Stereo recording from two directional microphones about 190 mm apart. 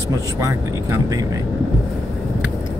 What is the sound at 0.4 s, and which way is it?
Speech, 15° right (ahead or behind).